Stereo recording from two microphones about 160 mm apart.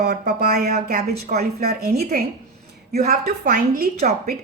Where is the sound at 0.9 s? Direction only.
50° right (ahead or behind).